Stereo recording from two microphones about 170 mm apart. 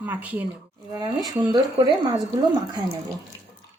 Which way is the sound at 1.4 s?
25° right (ahead or behind).